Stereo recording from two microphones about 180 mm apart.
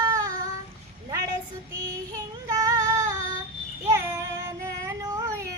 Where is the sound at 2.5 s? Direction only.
20° right (ahead or behind).